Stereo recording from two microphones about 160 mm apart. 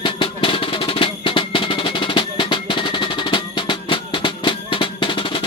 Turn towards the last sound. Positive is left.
turn(degrees=35)  # may be behind; listen again after turning